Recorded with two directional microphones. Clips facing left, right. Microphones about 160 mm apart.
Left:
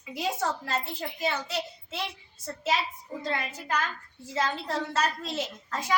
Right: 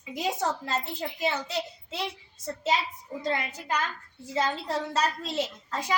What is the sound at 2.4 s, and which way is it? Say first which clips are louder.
A woman's voice: right 1 dB; 20° right (ahead or behind).